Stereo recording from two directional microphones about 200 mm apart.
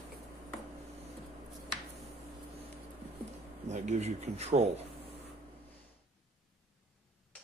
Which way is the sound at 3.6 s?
35° right (ahead or behind).